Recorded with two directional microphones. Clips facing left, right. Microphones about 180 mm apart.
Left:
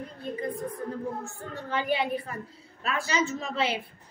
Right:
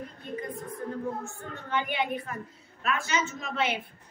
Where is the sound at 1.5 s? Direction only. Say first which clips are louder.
Left 3 dB; 35° left (ahead or behind).